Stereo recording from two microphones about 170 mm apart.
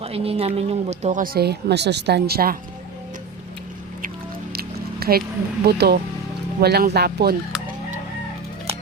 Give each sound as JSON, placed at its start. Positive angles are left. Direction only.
{"t": 0.0, "sound": "speech", "side_deg": -35}
{"t": 4.5, "sound": "music", "side_deg": -60}
{"t": 5.6, "sound": "speech", "side_deg": -70}